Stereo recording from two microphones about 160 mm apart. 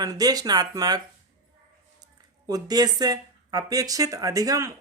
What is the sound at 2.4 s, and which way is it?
Speech, 25° right (ahead or behind).